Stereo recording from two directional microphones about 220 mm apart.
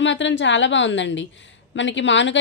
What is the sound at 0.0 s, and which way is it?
A woman's voice, 55° left (ahead or behind).